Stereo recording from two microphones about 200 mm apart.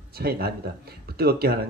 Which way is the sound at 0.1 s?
50° right (ahead or behind).